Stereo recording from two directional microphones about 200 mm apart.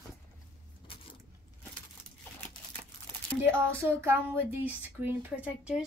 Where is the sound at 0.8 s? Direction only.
25° left (ahead or behind).